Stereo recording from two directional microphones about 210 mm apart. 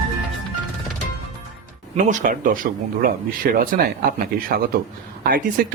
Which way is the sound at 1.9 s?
40° right (ahead or behind).